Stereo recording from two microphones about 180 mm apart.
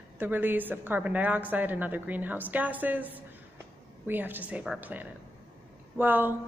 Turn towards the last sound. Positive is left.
turn(degrees=-10)  # may be behind; listen again after turning